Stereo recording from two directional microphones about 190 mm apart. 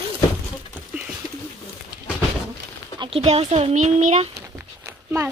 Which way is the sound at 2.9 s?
30° right (ahead or behind).